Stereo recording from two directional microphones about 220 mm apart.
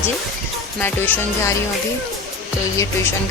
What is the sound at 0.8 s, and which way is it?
Speech, 10° left (ahead or behind).